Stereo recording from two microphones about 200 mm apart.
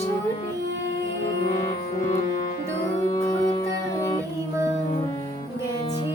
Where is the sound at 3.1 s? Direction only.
20° left (ahead or behind).